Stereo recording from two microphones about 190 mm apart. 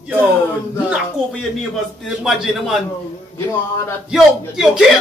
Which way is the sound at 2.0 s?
5° right (ahead or behind).